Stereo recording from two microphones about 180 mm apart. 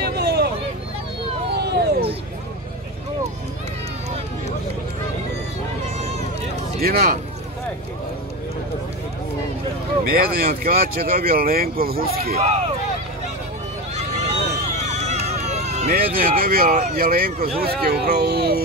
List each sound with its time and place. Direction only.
0.0 s a sound: 60° right (ahead or behind)
1.5 s vehicle: 65° right (ahead or behind)
6.8 s speech: 55° right (ahead or behind)
10.0 s speech: 55° right (ahead or behind)
13.9 s a sound: 40° right (ahead or behind)
15.9 s speech: 55° right (ahead or behind)